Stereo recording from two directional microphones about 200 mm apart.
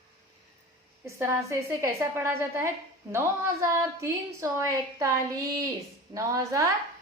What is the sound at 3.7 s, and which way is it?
A woman's voice, 15° right (ahead or behind).